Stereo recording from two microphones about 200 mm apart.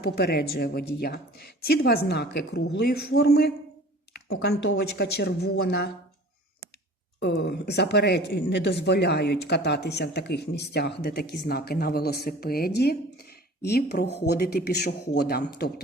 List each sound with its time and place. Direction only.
0.0 s a woman's voice: 50° left (ahead or behind)
7.2 s speech: 55° left (ahead or behind)